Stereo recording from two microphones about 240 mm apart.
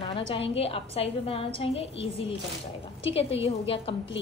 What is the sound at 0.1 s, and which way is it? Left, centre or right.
A woman's voice, left.